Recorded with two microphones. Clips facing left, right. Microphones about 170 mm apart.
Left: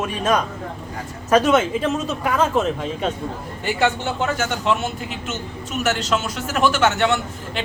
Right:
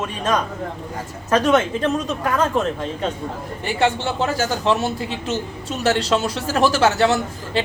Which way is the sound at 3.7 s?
30° right (ahead or behind).